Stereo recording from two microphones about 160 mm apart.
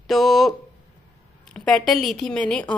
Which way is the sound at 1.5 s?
5° left (ahead or behind).